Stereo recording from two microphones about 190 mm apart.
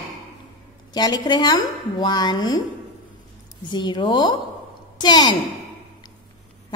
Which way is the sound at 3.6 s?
25° left (ahead or behind).